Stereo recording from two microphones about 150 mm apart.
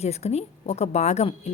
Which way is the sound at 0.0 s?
45° left (ahead or behind).